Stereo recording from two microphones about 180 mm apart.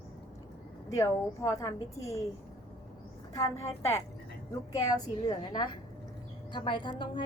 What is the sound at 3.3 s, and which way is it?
A woman's voice, 15° left (ahead or behind).